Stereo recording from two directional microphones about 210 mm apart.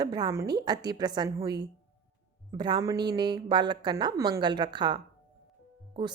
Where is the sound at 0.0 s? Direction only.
20° right (ahead or behind).